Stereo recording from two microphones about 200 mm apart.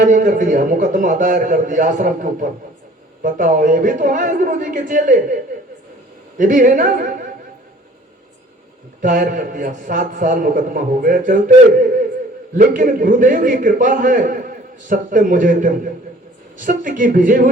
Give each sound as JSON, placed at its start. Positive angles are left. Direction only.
{"t": 0.0, "sound": "a man's voice", "side_deg": -40}
{"t": 9.0, "sound": "a man's voice", "side_deg": -40}